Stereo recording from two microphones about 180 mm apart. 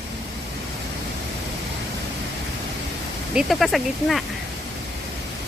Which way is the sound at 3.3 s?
Centre (ahead or behind).